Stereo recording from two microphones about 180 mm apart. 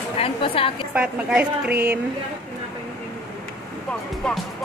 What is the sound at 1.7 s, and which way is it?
Speech, 60° right (ahead or behind).